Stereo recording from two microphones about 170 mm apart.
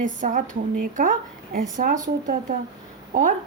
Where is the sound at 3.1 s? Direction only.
50° right (ahead or behind).